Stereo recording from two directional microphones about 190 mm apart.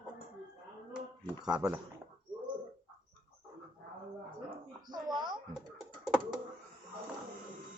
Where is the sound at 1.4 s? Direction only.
20° right (ahead or behind).